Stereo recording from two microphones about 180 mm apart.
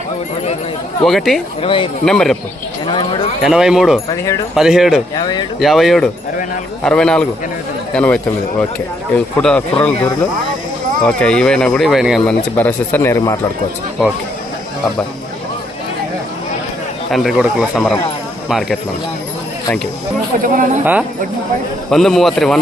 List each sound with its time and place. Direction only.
1.0 s speech: centre (ahead or behind)
1.6 s speech: 30° left (ahead or behind)
2.0 s speech: 5° left (ahead or behind)
2.8 s speech: 25° left (ahead or behind)
3.4 s speech: 5° right (ahead or behind)
4.1 s speech: 20° left (ahead or behind)
4.5 s speech: centre (ahead or behind)
5.1 s speech: 25° left (ahead or behind)
5.5 s speech: centre (ahead or behind)
12.5 s speech: 10° left (ahead or behind)
17.1 s speech: centre (ahead or behind)
20.4 s speech: 45° right (ahead or behind)
21.8 s speech: centre (ahead or behind)